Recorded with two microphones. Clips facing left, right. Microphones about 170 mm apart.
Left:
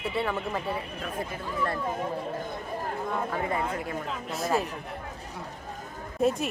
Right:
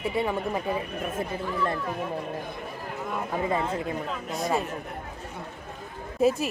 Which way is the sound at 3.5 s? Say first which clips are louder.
Right 3 dB; 25° right (ahead or behind).